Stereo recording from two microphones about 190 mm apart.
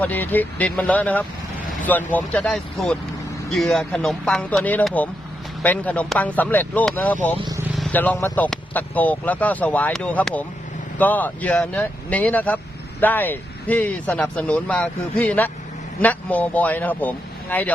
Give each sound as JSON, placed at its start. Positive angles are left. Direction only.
{"t": 0.0, "sound": "speech", "side_deg": 10}
{"t": 7.3, "sound": "speech", "side_deg": -20}
{"t": 7.8, "sound": "speech", "side_deg": 10}